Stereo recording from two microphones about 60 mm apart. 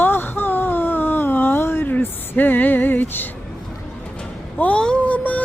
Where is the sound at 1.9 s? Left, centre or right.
Left.